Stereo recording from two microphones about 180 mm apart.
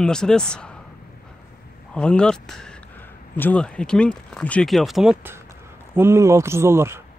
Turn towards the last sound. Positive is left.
turn(degrees=-15)  # may be behind; listen again after turning